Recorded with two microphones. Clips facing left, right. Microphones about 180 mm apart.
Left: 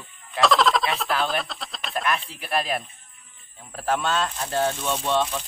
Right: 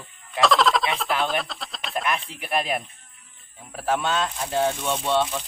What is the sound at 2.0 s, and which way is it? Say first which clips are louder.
Speech: left 2 dB; 15° right (ahead or behind).